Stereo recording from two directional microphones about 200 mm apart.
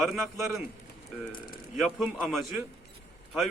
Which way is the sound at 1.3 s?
45° left (ahead or behind).